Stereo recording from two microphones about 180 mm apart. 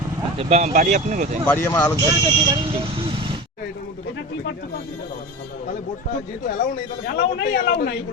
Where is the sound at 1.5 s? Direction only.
10° left (ahead or behind).